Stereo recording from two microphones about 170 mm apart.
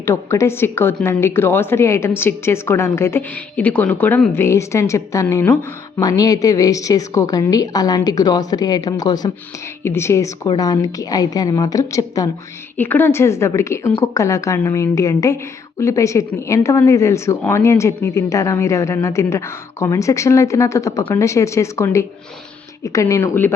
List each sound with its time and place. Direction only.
0.0 s a woman's voice: 15° left (ahead or behind)